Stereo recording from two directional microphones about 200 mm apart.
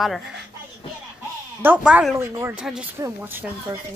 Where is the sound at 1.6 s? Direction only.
5° right (ahead or behind).